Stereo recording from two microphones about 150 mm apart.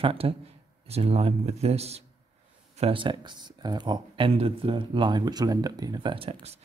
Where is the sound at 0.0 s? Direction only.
40° right (ahead or behind).